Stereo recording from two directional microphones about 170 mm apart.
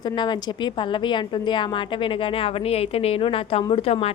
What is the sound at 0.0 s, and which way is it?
A woman's voice, 25° left (ahead or behind).